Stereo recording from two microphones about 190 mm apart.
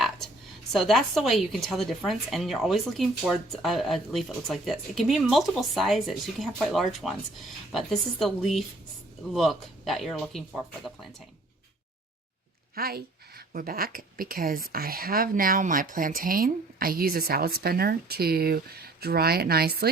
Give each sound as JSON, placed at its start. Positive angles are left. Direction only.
{"t": 0.7, "sound": "speech", "side_deg": 0}
{"t": 12.7, "sound": "a woman's voice", "side_deg": -55}